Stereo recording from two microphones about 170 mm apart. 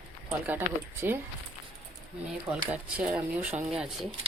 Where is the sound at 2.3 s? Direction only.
5° right (ahead or behind).